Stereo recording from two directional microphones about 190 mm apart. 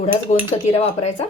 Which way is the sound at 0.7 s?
35° left (ahead or behind).